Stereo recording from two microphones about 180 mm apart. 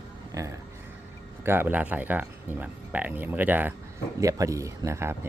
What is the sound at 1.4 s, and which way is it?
Speech, 10° right (ahead or behind).